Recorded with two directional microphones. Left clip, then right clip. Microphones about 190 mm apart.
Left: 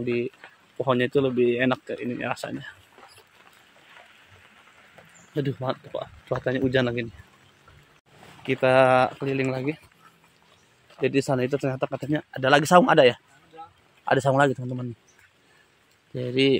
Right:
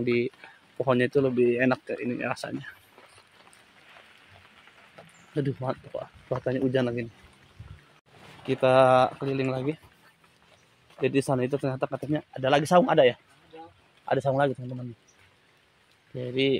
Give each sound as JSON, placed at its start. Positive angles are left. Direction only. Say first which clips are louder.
{"t": 0.0, "sound": "speech", "louder": "right 1 dB", "side_deg": -15}
{"t": 0.7, "sound": "speech", "louder": "left 1 dB", "side_deg": 0}
{"t": 5.3, "sound": "speech", "louder": "left 2 dB", "side_deg": 5}
{"t": 8.5, "sound": "speech", "louder": "left 1 dB", "side_deg": 10}
{"t": 11.0, "sound": "speech", "louder": "left 2 dB", "side_deg": 5}
{"t": 16.2, "sound": "speech", "louder": "left 4 dB", "side_deg": 30}